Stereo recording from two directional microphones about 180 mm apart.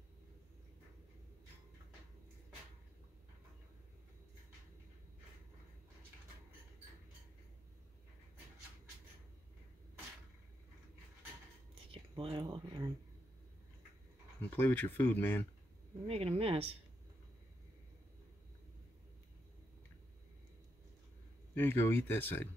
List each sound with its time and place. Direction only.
11.9 s speech: 30° right (ahead or behind)
14.5 s speech: 10° left (ahead or behind)
16.1 s speech: 35° right (ahead or behind)
21.5 s speech: 10° left (ahead or behind)